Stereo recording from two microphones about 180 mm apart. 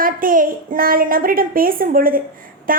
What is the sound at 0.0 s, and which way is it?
A woman's voice, 50° right (ahead or behind).